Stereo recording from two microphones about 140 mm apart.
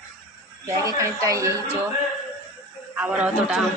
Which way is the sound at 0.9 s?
20° right (ahead or behind).